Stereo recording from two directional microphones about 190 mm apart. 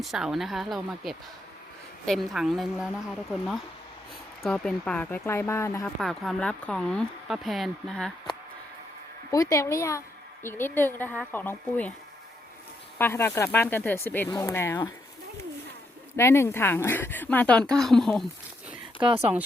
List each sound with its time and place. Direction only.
0.0 s speech: centre (ahead or behind)
4.4 s speech: 5° left (ahead or behind)
6.0 s speech: centre (ahead or behind)
9.3 s speech: 15° left (ahead or behind)
13.0 s speech: 10° left (ahead or behind)
16.1 s speech: 15° left (ahead or behind)
19.0 s speech: 30° right (ahead or behind)